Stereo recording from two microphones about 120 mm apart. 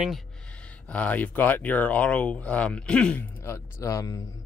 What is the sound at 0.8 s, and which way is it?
Speech, 10° left (ahead or behind).